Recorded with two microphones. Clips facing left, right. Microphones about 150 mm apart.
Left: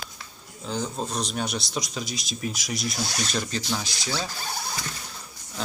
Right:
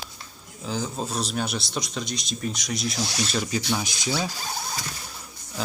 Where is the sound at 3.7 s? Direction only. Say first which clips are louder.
Right 3 dB; 15° right (ahead or behind).